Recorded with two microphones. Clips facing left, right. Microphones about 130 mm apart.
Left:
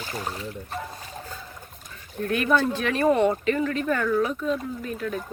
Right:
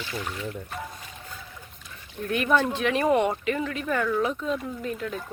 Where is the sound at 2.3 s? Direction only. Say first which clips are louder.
Left 1 dB; 20° right (ahead or behind).